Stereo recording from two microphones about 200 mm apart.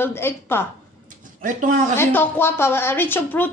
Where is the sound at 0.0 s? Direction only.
10° left (ahead or behind).